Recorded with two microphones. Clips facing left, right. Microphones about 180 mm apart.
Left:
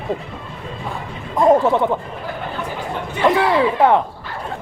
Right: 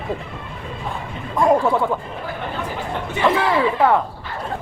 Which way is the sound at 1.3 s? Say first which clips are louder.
Left 3 dB; 20° left (ahead or behind).